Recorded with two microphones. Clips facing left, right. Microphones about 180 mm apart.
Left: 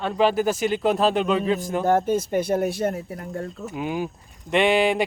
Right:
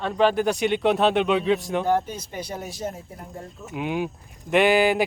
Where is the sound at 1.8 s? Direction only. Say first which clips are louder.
Left 4 dB; 50° left (ahead or behind).